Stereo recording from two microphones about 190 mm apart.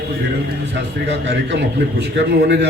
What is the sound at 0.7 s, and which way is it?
A man's voice, 65° right (ahead or behind).